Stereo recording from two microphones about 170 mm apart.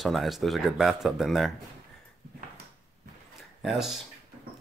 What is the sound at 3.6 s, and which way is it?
Speech, centre (ahead or behind).